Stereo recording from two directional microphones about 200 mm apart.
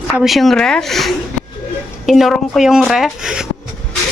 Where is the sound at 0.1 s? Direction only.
Centre (ahead or behind).